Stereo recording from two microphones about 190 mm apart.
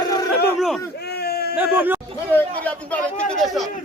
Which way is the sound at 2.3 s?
10° left (ahead or behind).